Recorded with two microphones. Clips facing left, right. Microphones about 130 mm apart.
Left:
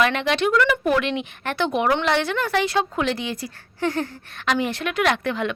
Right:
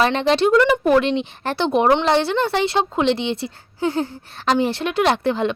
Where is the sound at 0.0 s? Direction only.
30° right (ahead or behind).